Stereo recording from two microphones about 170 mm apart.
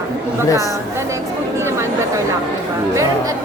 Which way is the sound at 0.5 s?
20° right (ahead or behind).